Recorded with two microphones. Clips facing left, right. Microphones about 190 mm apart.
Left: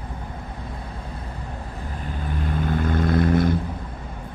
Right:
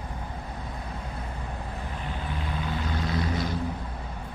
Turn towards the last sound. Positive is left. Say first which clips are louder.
# left 9 dB
turn(degrees=55)  # may be behind; listen again after turning